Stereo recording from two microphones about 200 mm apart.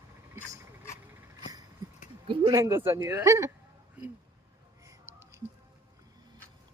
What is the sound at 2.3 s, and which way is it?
Speech, 20° right (ahead or behind).